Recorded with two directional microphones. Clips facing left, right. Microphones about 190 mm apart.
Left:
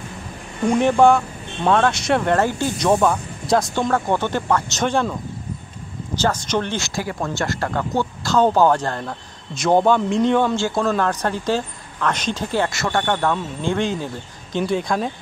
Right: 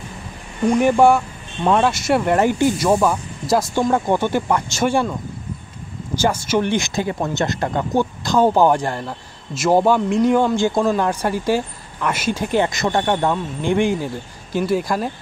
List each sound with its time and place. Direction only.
0.7 s speech: 10° right (ahead or behind)
6.1 s speech: 10° right (ahead or behind)